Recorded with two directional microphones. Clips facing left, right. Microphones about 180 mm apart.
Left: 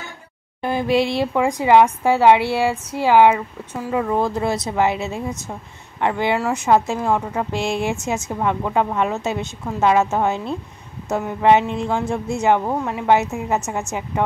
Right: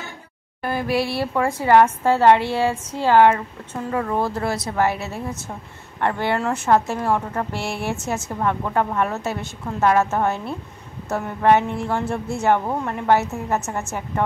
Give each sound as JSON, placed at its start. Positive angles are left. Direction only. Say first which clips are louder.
{"t": 0.6, "sound": "a woman's voice", "louder": "left 4 dB", "side_deg": 20}